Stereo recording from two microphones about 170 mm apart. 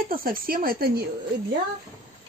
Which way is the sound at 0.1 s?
60° right (ahead or behind).